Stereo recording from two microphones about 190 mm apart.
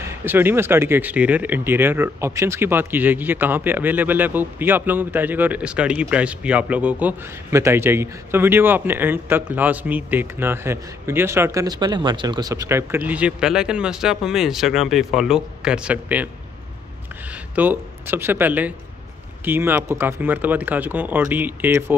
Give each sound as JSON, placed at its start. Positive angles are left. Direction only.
{"t": 0.0, "sound": "speech", "side_deg": -10}
{"t": 17.6, "sound": "speech", "side_deg": -10}